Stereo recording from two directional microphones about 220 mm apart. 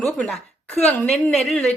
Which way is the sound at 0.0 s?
Centre (ahead or behind).